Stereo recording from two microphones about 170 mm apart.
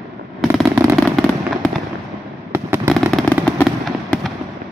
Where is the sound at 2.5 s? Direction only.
15° right (ahead or behind).